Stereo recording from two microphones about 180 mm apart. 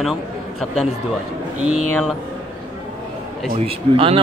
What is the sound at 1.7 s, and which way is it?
Speech, 5° right (ahead or behind).